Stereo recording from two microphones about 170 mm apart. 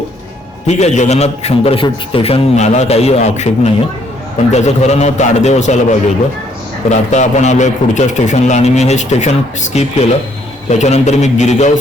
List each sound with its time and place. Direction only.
0.7 s a man's voice: 40° left (ahead or behind)